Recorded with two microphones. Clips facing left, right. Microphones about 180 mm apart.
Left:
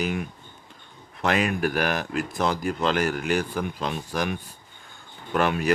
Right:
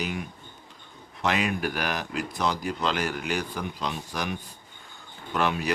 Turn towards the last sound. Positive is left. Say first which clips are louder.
# left 4 dB
turn(degrees=50)  # may be behind; listen again after turning